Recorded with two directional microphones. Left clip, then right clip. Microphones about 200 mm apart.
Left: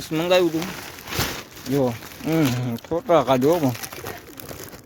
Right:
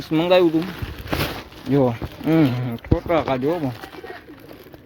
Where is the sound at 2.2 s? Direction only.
5° left (ahead or behind).